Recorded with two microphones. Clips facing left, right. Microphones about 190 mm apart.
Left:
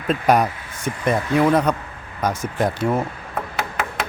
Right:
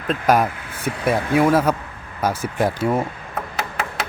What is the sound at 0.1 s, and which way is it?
Speech, centre (ahead or behind).